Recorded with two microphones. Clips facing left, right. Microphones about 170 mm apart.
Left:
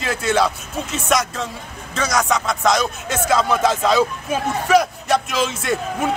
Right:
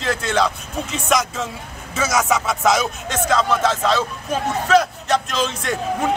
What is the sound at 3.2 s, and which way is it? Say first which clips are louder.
Speech: left 1 dB; 10° left (ahead or behind).